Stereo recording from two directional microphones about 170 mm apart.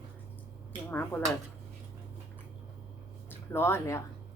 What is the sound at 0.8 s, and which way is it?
Speech, 15° left (ahead or behind).